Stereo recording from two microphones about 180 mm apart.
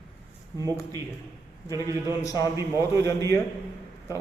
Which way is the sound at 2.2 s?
20° left (ahead or behind).